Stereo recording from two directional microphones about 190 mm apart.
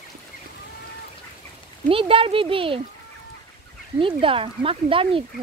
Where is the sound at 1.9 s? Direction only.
30° right (ahead or behind).